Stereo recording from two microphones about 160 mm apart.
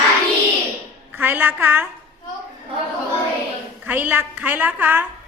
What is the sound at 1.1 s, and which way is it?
Speech, 10° right (ahead or behind).